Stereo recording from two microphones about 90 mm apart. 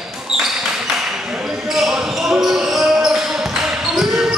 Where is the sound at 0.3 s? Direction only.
5° right (ahead or behind).